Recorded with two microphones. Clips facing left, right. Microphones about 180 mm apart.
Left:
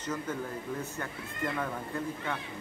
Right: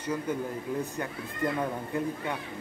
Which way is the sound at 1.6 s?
15° right (ahead or behind).